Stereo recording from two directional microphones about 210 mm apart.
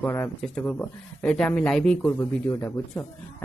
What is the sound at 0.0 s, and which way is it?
Speech, 5° left (ahead or behind).